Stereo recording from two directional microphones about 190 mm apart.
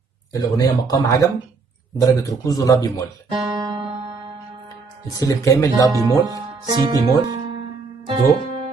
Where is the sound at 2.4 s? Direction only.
20° left (ahead or behind).